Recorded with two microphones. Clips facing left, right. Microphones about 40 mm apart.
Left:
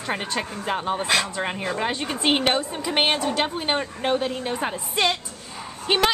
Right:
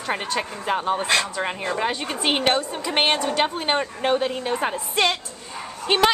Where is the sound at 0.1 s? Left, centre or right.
Centre.